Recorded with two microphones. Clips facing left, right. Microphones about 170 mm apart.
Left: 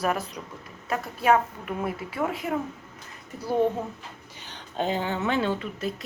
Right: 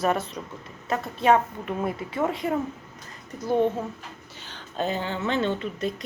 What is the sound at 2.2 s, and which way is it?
Speech, 5° left (ahead or behind).